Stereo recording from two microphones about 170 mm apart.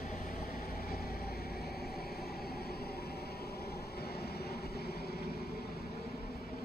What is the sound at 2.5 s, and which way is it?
Train, 65° left (ahead or behind).